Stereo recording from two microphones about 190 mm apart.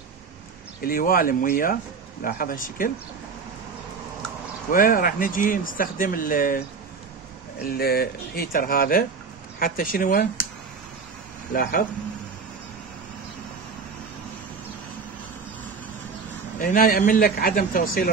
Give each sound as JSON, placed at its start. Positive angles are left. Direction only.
{"t": 0.8, "sound": "speech", "side_deg": 50}
{"t": 4.6, "sound": "speech", "side_deg": 45}
{"t": 7.7, "sound": "speech", "side_deg": 55}
{"t": 11.5, "sound": "speech", "side_deg": 50}
{"t": 16.5, "sound": "speech", "side_deg": 45}